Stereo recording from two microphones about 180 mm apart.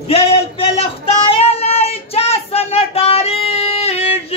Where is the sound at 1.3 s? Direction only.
35° left (ahead or behind).